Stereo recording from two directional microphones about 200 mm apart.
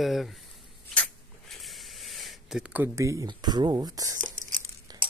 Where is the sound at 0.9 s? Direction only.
Centre (ahead or behind); by 5.0 s 20° right (ahead or behind).